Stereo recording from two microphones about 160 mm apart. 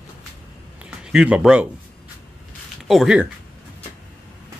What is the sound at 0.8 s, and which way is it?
Speech, 5° right (ahead or behind).